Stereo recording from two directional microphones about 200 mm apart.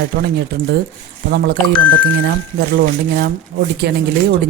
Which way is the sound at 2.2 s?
50° right (ahead or behind).